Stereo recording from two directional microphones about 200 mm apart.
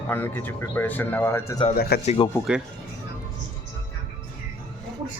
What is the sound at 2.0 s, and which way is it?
Speech, 25° left (ahead or behind).